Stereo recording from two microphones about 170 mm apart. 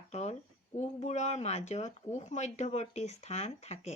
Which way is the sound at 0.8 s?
40° left (ahead or behind).